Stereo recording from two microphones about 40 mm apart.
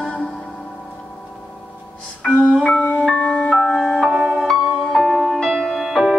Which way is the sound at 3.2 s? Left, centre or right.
Left.